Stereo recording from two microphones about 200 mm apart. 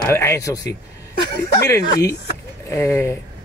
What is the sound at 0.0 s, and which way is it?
A man's voice, 15° left (ahead or behind).